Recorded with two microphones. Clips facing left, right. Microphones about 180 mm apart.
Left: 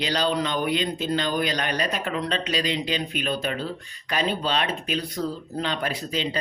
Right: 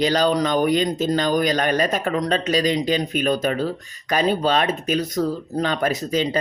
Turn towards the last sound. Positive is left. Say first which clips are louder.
# right 6 dB
turn(degrees=-45)  # may be behind; listen again after turning